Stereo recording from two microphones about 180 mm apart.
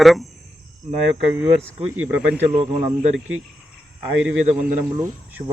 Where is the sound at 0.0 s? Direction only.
Centre (ahead or behind).